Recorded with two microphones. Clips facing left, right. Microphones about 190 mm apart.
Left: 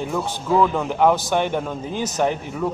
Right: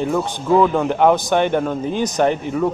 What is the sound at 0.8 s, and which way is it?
Speech, 5° left (ahead or behind).